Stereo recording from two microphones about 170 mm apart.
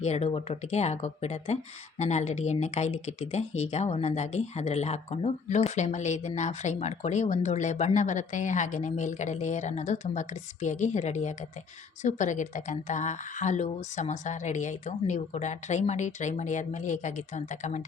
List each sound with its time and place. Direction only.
0.0 s speech: 40° left (ahead or behind)